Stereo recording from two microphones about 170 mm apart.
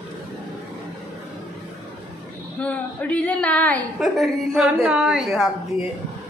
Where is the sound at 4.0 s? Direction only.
Centre (ahead or behind).